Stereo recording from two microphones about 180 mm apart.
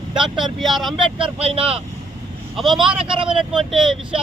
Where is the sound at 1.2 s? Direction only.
30° right (ahead or behind).